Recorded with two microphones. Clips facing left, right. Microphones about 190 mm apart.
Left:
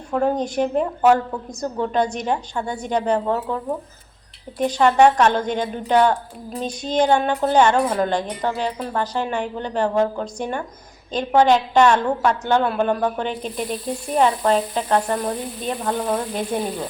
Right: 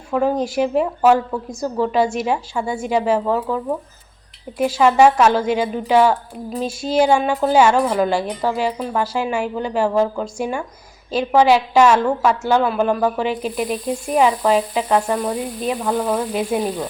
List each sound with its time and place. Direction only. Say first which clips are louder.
0.1 s a woman's voice: right 2 dB; 5° right (ahead or behind)